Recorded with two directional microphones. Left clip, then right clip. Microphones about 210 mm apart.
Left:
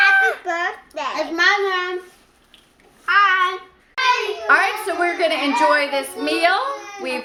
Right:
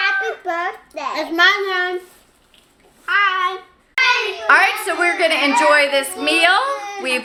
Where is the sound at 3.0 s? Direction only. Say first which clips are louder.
Left 1 dB; centre (ahead or behind).